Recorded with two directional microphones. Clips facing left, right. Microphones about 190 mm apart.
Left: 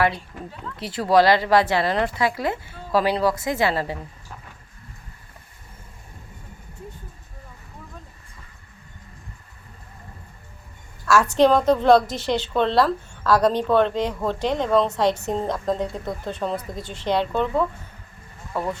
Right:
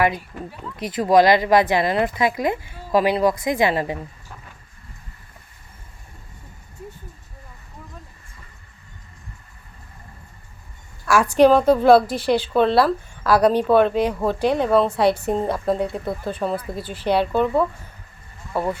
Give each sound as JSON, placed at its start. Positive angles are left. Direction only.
{"t": 0.0, "sound": "a woman's voice", "side_deg": -10}
{"t": 11.0, "sound": "a woman's voice", "side_deg": -10}